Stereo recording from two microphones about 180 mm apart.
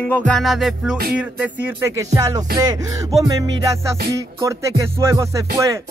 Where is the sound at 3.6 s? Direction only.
15° right (ahead or behind).